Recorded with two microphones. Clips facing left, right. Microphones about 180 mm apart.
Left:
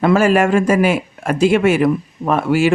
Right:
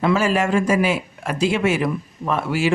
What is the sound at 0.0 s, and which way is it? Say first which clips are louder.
Speech: left 6 dB; 55° left (ahead or behind).